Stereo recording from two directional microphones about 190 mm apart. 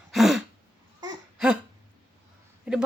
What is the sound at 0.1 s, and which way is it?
Throat clearing, centre (ahead or behind).